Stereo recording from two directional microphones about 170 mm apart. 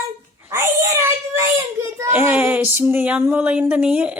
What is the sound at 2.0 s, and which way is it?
A woman's voice, 10° right (ahead or behind).